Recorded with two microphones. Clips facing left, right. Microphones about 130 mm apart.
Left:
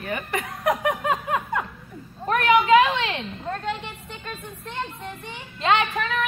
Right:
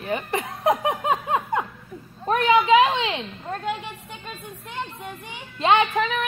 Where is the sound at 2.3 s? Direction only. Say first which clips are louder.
Even; 25° right (ahead or behind).